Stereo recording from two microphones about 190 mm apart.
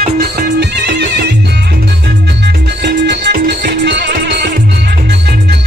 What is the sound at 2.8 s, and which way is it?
Music, 60° right (ahead or behind).